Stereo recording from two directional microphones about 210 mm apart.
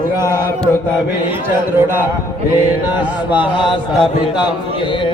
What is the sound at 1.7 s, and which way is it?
Mantra, 10° right (ahead or behind).